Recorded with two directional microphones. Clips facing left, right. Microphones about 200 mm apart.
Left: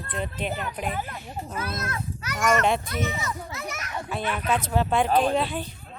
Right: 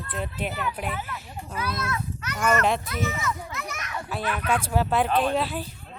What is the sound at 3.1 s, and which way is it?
Speech, 30° left (ahead or behind).